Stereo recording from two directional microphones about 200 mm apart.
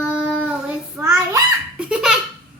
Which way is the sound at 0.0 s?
5° right (ahead or behind).